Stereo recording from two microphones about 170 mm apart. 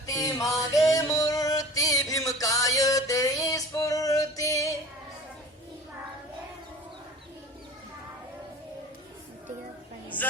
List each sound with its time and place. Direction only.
0.0 s music: 20° left (ahead or behind)
0.5 s music: centre (ahead or behind)
1.1 s music: 20° left (ahead or behind)